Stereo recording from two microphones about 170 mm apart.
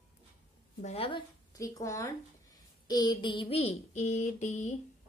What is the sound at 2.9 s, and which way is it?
Child singing, 25° left (ahead or behind).